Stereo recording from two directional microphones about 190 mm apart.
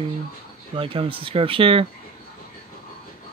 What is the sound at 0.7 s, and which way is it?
Speech, 30° right (ahead or behind).